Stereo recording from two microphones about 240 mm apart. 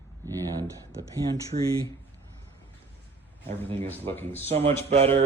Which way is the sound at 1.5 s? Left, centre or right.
Right.